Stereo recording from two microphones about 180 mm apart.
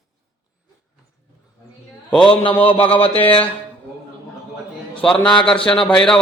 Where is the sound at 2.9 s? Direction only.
30° left (ahead or behind).